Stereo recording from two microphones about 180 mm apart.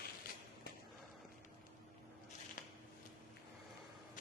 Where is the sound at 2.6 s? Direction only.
50° left (ahead or behind).